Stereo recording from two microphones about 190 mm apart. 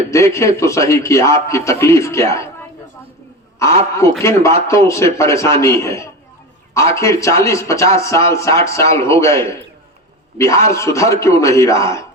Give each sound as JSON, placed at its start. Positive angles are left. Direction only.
{"t": 0.1, "sound": "speech", "side_deg": 15}
{"t": 4.2, "sound": "speech", "side_deg": 15}